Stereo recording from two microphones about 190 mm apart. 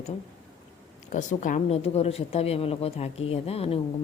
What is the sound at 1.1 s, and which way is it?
Speech, 40° left (ahead or behind).